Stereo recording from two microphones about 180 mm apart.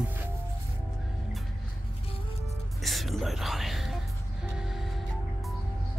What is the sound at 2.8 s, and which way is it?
Music, centre (ahead or behind).